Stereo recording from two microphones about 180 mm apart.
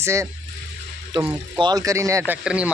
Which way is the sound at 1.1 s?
25° right (ahead or behind).